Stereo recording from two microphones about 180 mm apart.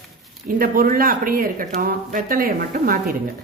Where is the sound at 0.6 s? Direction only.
50° right (ahead or behind).